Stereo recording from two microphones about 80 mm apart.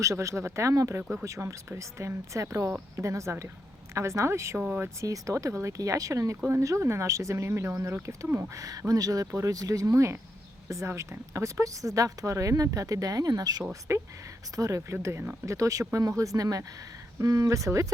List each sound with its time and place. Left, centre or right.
0.0 s speech: right
5.0 s speech: right
9.9 s speech: right
13.9 s speech: right